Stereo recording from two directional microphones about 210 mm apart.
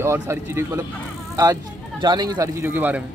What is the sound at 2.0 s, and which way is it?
Speech, 20° right (ahead or behind).